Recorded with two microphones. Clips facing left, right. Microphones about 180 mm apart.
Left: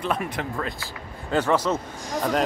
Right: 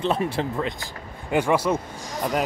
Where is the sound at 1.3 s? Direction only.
10° right (ahead or behind).